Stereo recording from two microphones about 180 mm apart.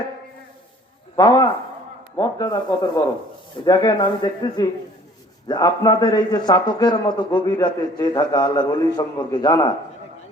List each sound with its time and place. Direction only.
1.1 s a man's voice: 20° left (ahead or behind)